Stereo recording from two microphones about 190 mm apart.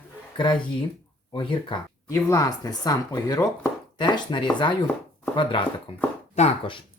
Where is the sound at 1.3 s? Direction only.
25° left (ahead or behind).